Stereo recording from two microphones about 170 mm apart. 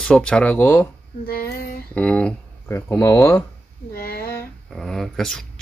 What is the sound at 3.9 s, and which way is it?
Child singing, 60° left (ahead or behind).